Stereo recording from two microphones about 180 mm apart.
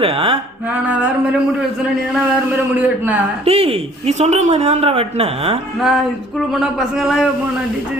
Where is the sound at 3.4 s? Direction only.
30° right (ahead or behind).